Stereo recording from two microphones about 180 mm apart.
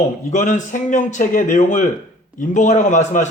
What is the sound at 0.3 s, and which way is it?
Speech, 45° left (ahead or behind).